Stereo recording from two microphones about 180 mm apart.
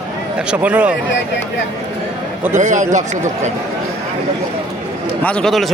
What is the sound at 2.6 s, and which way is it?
Speech, 45° right (ahead or behind).